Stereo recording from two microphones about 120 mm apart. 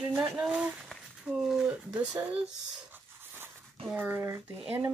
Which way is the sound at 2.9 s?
15° right (ahead or behind).